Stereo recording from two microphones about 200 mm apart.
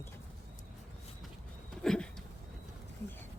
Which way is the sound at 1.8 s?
5° left (ahead or behind).